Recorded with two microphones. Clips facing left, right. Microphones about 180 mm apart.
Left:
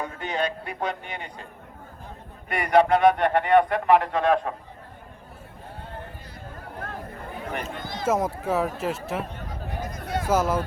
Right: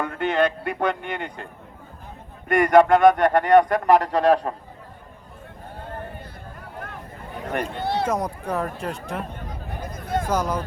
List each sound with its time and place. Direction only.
0.0 s a man's voice: 60° right (ahead or behind)
2.5 s speech: 50° right (ahead or behind)
7.8 s speech: 65° right (ahead or behind)
8.0 s speech: 5° left (ahead or behind)
9.8 s a sound: 50° right (ahead or behind)
10.2 s speech: 5° left (ahead or behind)